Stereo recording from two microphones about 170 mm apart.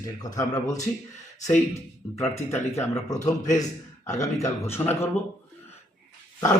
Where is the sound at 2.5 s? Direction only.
15° left (ahead or behind).